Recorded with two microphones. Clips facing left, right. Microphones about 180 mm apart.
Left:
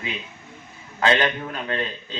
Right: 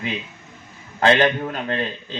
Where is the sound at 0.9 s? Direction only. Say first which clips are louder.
Right 4 dB; 35° right (ahead or behind).